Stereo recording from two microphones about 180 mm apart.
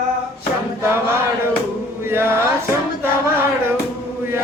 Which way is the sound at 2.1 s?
15° right (ahead or behind).